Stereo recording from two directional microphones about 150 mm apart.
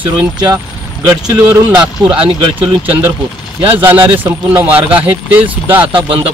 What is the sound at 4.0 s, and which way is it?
Speech, 30° right (ahead or behind).